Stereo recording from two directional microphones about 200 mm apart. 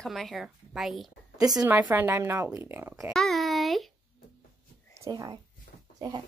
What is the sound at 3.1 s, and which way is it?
Speech, centre (ahead or behind).